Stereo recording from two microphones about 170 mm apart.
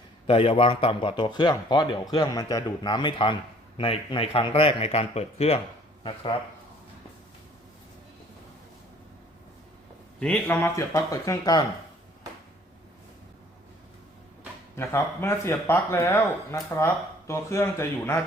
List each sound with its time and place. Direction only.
0.3 s a man's voice: 30° left (ahead or behind)
10.2 s speech: 10° left (ahead or behind)
14.8 s speech: 15° left (ahead or behind)